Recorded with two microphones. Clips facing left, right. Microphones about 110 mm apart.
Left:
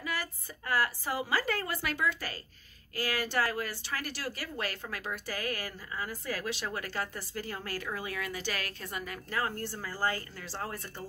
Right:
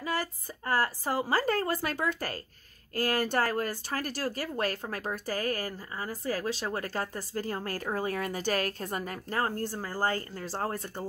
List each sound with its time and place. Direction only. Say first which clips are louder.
0.0 s speech: right 5 dB; 35° right (ahead or behind)